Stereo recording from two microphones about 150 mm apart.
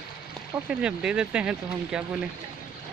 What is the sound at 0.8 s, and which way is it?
Speech, 5° right (ahead or behind).